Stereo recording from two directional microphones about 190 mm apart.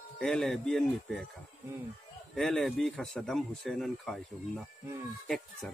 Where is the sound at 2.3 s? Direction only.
Centre (ahead or behind).